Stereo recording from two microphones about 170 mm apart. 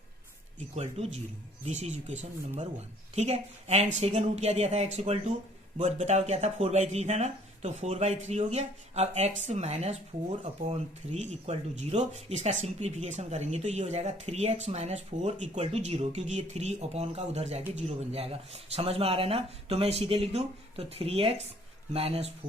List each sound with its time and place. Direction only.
1.0 s speech: 40° right (ahead or behind)